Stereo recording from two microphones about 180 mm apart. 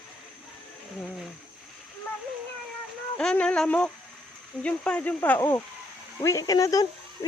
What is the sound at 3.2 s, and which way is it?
Speech, 5° left (ahead or behind).